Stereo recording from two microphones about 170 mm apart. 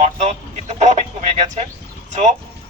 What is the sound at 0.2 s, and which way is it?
Speech, 40° right (ahead or behind).